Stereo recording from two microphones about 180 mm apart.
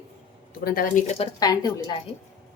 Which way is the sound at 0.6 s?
55° left (ahead or behind).